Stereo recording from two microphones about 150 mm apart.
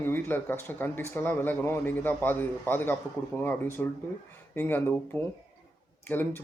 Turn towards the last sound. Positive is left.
turn(degrees=15)  # may be behind; listen again after turning